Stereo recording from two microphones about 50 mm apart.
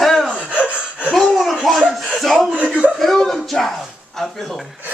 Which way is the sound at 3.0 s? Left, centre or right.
Centre.